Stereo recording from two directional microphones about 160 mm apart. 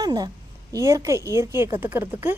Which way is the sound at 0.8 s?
20° right (ahead or behind).